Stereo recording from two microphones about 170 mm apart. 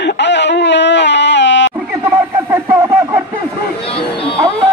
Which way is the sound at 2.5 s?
10° right (ahead or behind).